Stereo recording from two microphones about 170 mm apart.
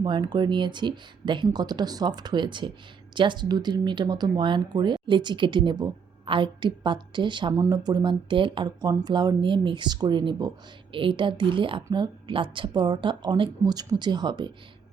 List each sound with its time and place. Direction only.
0.0 s speech: 25° right (ahead or behind)